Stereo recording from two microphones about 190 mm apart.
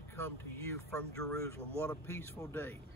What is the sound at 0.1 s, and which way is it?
Speech, 10° left (ahead or behind).